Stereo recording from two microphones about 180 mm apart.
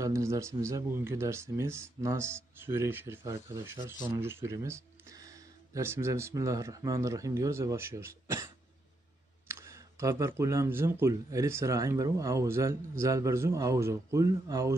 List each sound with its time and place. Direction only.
0.0 s speech: 15° right (ahead or behind)
9.5 s speech: 15° right (ahead or behind)